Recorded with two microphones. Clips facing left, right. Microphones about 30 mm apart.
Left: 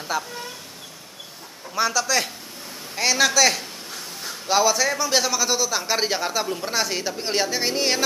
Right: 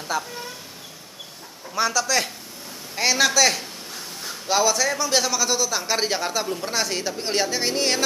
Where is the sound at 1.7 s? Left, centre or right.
Centre.